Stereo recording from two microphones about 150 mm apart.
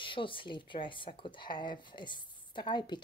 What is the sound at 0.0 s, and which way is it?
Speech, 35° left (ahead or behind).